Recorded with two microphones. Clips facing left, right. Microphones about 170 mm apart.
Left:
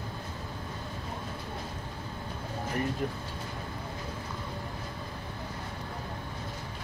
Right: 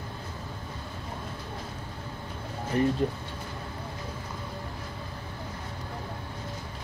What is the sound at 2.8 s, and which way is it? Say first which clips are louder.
Speech: right 8 dB; 25° right (ahead or behind).